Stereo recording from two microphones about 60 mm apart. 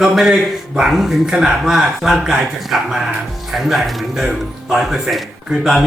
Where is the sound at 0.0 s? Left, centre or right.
Centre.